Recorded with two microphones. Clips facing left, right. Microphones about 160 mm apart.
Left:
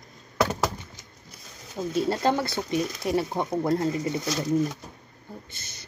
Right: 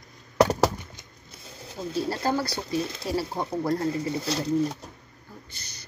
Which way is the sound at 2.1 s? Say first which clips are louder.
Left 2 dB; 25° left (ahead or behind).